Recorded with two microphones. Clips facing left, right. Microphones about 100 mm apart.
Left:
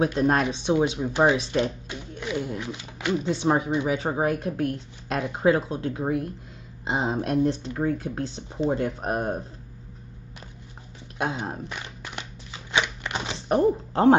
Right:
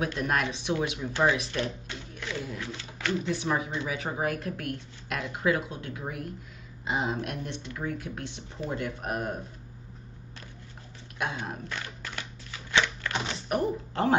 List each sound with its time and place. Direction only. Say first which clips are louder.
0.0 s speech: left 7 dB; 30° left (ahead or behind)
11.1 s speech: left 5 dB; 30° left (ahead or behind)
11.7 s a sound: left 1 dB; 15° left (ahead or behind)